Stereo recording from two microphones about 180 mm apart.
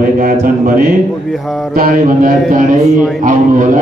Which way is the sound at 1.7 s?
50° right (ahead or behind).